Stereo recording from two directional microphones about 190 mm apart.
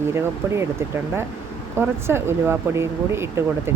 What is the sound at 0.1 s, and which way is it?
Speech, 15° right (ahead or behind).